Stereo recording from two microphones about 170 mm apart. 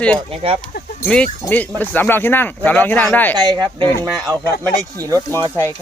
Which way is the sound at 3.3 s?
25° right (ahead or behind).